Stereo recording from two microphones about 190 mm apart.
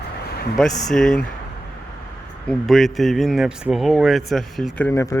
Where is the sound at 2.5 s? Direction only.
Centre (ahead or behind).